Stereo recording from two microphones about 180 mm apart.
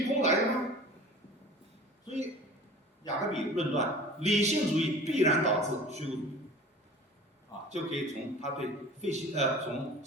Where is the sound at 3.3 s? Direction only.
40° right (ahead or behind).